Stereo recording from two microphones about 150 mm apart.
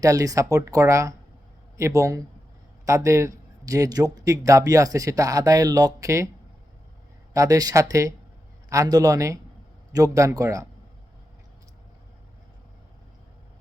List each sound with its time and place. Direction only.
0.0 s a man's voice: 25° right (ahead or behind)
7.3 s a man's voice: 25° right (ahead or behind)